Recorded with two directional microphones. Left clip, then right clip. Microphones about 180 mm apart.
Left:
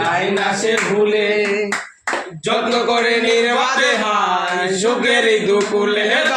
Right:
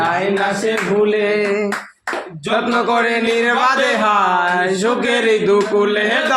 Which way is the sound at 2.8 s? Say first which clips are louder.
Even; 45° right (ahead or behind).